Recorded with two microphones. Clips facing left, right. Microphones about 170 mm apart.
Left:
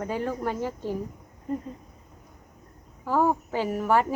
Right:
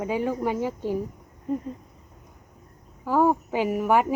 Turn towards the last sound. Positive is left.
turn(degrees=-10)  # may be behind; listen again after turning